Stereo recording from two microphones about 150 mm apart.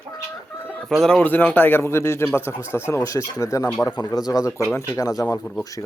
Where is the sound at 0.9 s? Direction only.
5° left (ahead or behind); by 5.4 s 25° left (ahead or behind).